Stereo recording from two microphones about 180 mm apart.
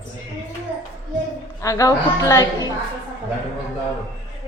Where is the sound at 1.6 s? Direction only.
20° left (ahead or behind).